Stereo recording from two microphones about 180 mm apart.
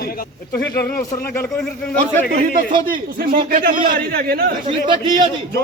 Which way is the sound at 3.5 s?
55° right (ahead or behind).